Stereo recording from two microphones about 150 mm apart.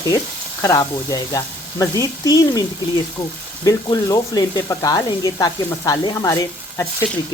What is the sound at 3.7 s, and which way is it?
Speech, 25° left (ahead or behind).